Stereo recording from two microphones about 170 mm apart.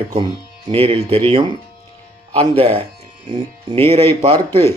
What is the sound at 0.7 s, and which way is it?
Speech, 35° right (ahead or behind).